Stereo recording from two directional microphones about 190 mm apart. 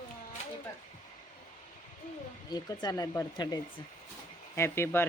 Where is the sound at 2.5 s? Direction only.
20° left (ahead or behind).